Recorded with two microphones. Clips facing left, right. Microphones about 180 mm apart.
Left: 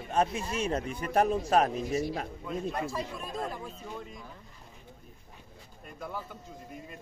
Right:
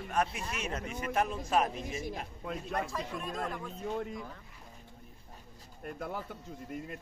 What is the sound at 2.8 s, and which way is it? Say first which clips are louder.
Speech: left 3 dB; 5° left (ahead or behind).